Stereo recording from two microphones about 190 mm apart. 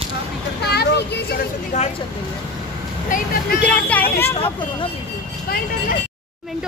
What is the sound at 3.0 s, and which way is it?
Speech, 45° left (ahead or behind).